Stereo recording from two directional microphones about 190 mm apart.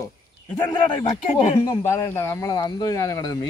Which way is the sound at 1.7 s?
15° left (ahead or behind).